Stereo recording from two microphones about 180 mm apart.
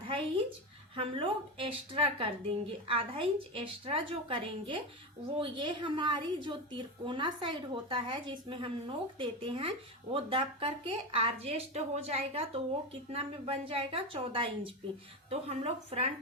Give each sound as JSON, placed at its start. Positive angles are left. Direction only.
{"t": 0.9, "sound": "a woman's voice", "side_deg": -30}